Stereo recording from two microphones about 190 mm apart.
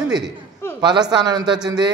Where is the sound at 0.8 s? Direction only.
20° right (ahead or behind).